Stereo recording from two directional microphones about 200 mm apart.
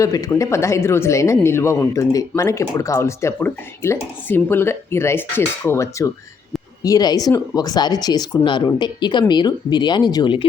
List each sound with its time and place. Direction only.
0.0 s speech: 15° left (ahead or behind)